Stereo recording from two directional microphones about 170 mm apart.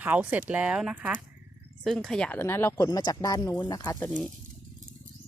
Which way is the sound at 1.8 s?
5° left (ahead or behind).